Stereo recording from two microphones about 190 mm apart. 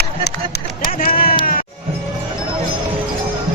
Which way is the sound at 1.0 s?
50° left (ahead or behind).